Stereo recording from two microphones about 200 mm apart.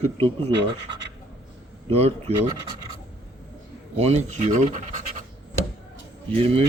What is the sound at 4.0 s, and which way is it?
Speech, 35° right (ahead or behind).